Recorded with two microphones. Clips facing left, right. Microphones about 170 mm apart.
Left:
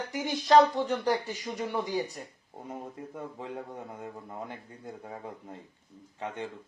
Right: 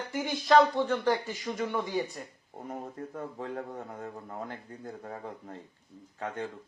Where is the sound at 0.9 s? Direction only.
15° left (ahead or behind).